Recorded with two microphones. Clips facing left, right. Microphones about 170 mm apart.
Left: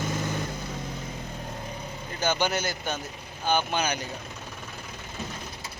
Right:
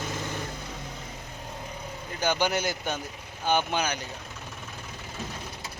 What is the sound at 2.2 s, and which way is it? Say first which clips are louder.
Speech: even; 15° right (ahead or behind).